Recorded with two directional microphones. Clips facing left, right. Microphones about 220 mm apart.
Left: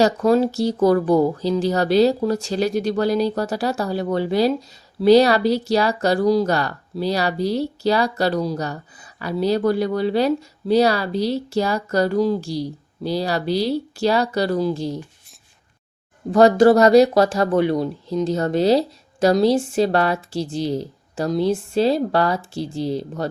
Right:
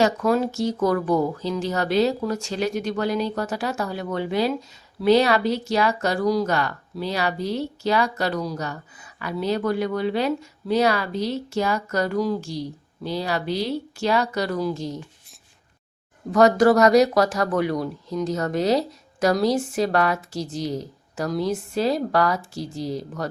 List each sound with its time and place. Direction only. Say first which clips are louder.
0.0 s speech: left 4 dB; 30° left (ahead or behind)
16.3 s speech: left 3 dB; 30° left (ahead or behind)